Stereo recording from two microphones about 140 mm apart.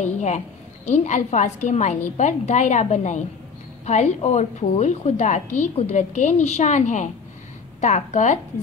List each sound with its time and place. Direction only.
0.0 s a woman's voice: 55° left (ahead or behind)